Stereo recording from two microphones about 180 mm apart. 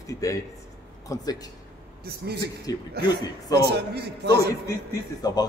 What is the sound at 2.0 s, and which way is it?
Speech, 60° right (ahead or behind).